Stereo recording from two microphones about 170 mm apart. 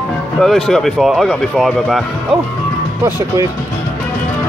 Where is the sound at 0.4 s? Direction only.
Centre (ahead or behind).